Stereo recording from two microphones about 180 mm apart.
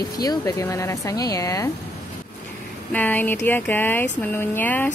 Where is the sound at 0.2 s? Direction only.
20° left (ahead or behind).